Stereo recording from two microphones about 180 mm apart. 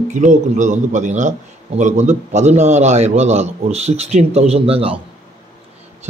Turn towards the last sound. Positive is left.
turn(degrees=-30)  # may be behind; listen again after turning